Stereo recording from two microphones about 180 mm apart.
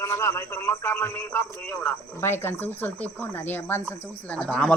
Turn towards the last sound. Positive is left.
turn(degrees=5)  # may be behind; listen again after turning